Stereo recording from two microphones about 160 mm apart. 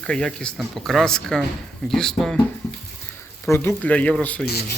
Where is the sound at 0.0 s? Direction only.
5° left (ahead or behind).